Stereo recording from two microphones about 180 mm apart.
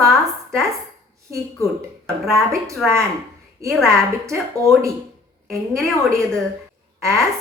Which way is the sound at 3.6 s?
15° right (ahead or behind).